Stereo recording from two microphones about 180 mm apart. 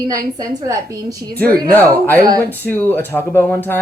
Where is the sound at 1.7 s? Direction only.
10° left (ahead or behind).